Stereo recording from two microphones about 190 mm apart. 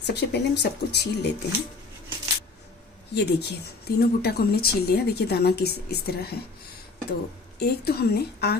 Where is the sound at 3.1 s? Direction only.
60° left (ahead or behind).